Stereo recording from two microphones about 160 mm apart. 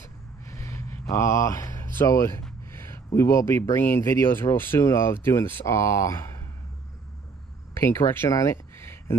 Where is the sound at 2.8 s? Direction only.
15° left (ahead or behind).